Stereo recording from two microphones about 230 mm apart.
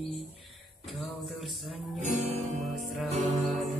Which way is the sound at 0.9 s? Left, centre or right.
Centre.